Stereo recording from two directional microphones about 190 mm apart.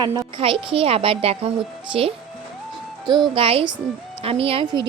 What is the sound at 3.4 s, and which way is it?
A woman's voice, 30° right (ahead or behind).